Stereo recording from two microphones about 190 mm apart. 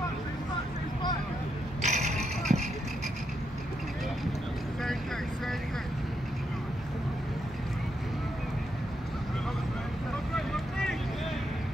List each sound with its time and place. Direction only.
1.8 s mechanisms: 40° right (ahead or behind)
2.5 s vehicle: 35° right (ahead or behind)
10.3 s boat: centre (ahead or behind)